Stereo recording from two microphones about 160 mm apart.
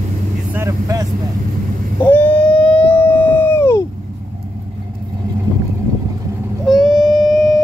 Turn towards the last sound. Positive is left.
turn(degrees=0)  # may be behind; listen again after turning